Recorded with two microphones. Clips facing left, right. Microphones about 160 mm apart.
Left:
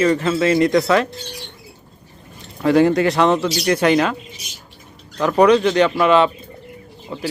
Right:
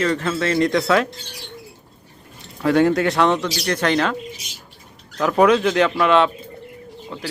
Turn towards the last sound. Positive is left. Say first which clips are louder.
# left 3 dB
turn(degrees=10)  # may be behind; listen again after turning